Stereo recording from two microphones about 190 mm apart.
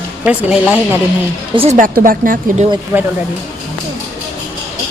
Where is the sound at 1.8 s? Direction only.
45° right (ahead or behind).